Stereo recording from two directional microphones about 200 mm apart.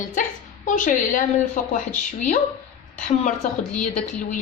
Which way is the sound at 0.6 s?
40° left (ahead or behind).